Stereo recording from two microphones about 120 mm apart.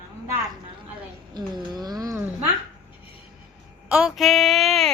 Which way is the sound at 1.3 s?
35° right (ahead or behind).